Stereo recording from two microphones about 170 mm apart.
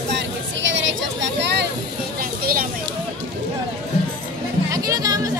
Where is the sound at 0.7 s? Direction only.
90° right.